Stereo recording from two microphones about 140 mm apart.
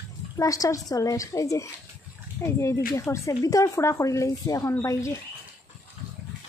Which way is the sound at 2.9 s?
25° left (ahead or behind).